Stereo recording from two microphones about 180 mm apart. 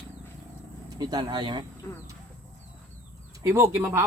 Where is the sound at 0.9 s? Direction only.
20° right (ahead or behind).